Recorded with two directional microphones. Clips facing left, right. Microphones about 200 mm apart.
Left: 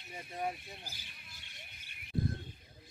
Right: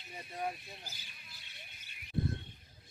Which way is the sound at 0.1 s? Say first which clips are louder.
Left 1 dB; centre (ahead or behind).